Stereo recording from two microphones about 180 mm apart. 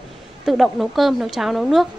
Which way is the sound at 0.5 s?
Centre (ahead or behind).